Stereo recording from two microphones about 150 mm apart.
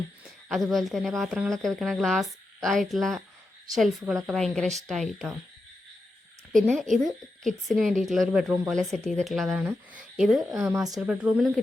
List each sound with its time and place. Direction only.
0.4 s speech: centre (ahead or behind)
4.3 s speech: centre (ahead or behind)
6.6 s speech: 5° left (ahead or behind)
10.5 s speech: 20° right (ahead or behind)
11.0 s speech: 10° right (ahead or behind)